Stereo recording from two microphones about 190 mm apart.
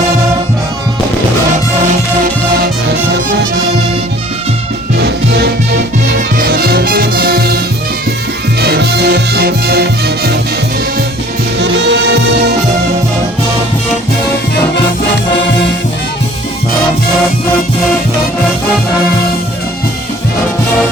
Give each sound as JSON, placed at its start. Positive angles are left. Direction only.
{"t": 4.9, "sound": "music", "side_deg": -60}
{"t": 8.6, "sound": "music", "side_deg": -60}
{"t": 11.6, "sound": "music", "side_deg": -65}